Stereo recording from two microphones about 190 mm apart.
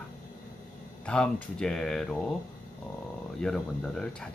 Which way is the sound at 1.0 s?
5° left (ahead or behind).